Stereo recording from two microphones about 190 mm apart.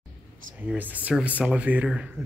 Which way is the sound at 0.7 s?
10° right (ahead or behind).